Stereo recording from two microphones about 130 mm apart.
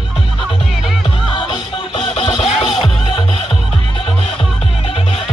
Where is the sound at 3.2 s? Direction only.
45° left (ahead or behind).